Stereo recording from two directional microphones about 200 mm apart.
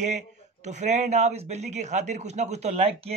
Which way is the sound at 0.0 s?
35° right (ahead or behind).